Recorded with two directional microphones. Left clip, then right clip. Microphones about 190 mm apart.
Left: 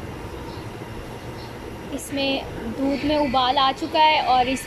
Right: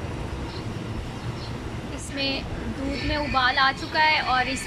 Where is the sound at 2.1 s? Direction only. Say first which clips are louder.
Left 4 dB; 20° left (ahead or behind).